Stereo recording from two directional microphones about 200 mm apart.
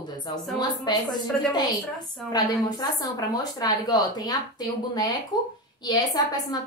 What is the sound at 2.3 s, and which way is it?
A woman's voice, 20° left (ahead or behind).